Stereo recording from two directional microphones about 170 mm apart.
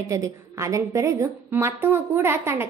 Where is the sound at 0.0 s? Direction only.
20° right (ahead or behind).